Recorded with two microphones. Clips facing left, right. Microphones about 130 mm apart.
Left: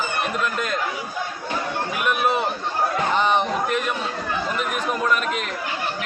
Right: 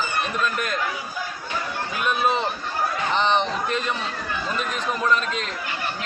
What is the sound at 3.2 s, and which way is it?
Speech, 10° left (ahead or behind).